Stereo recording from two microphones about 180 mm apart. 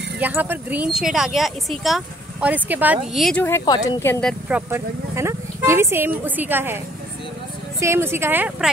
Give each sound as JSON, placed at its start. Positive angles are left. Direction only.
{"t": 0.2, "sound": "speech", "side_deg": -10}
{"t": 3.4, "sound": "speech", "side_deg": 20}
{"t": 4.0, "sound": "speech", "side_deg": 10}
{"t": 4.6, "sound": "speech", "side_deg": -10}
{"t": 7.8, "sound": "speech", "side_deg": -15}